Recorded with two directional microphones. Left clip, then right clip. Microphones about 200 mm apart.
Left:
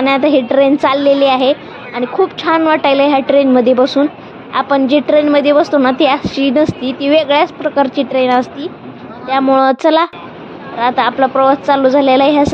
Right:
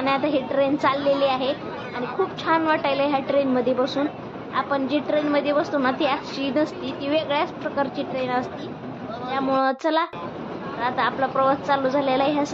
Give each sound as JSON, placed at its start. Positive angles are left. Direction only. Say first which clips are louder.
{"t": 0.0, "sound": "a woman's voice", "louder": "left 11 dB", "side_deg": 40}